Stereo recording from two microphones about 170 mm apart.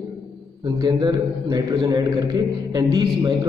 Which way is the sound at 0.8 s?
25° right (ahead or behind).